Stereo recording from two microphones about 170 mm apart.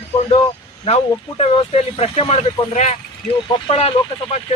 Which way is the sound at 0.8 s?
35° left (ahead or behind).